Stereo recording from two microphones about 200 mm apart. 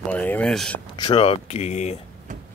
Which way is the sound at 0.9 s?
25° left (ahead or behind).